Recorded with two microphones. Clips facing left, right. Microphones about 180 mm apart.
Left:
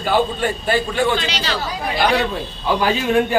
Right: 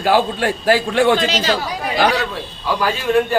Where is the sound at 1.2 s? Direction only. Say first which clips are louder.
Right 5 dB; 45° right (ahead or behind).